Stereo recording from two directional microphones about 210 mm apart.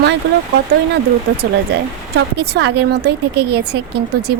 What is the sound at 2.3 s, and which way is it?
Speech, 50° right (ahead or behind).